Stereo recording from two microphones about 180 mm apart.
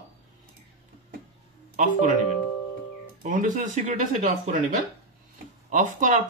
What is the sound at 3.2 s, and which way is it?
Speech, 45° right (ahead or behind).